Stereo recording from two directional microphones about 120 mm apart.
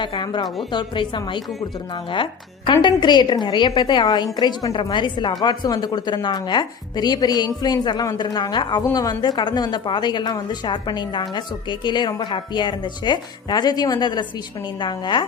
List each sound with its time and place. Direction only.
0.0 s a woman's voice: 40° left (ahead or behind)
2.8 s a woman's voice: 40° left (ahead or behind)